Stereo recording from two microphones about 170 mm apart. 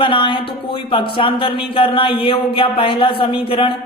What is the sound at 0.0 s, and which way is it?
Speech, 30° left (ahead or behind).